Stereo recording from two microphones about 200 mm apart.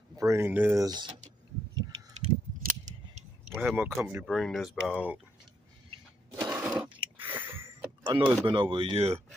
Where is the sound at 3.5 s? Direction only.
10° right (ahead or behind).